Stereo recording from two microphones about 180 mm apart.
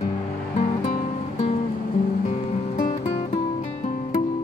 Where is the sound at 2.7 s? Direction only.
55° left (ahead or behind).